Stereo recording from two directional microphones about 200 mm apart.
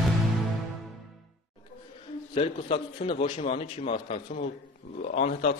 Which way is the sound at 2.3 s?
30° left (ahead or behind).